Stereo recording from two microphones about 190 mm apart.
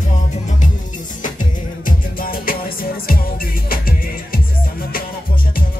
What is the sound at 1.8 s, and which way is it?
Music, 50° left (ahead or behind).